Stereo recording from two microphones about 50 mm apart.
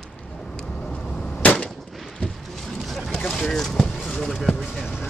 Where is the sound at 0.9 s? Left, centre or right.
Centre.